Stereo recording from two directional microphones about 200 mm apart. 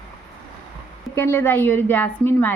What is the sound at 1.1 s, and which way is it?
A woman's voice, 10° left (ahead or behind).